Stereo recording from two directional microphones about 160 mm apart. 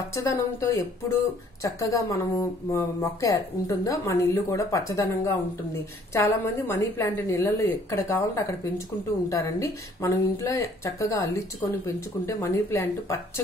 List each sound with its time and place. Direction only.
0.1 s a woman's voice: 20° left (ahead or behind)